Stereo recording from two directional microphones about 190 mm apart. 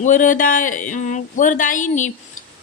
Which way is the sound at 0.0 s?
45° left (ahead or behind).